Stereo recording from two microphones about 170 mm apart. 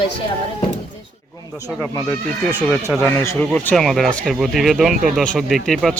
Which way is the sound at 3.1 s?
10° left (ahead or behind).